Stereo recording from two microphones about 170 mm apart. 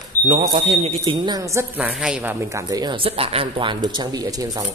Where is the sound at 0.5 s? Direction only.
40° right (ahead or behind).